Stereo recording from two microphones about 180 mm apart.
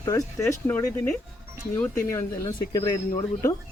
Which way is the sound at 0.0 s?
20° left (ahead or behind).